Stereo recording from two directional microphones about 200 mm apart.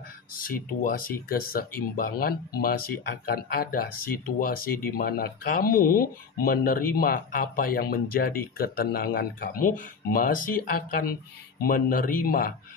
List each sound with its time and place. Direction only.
0.4 s speech: 45° left (ahead or behind)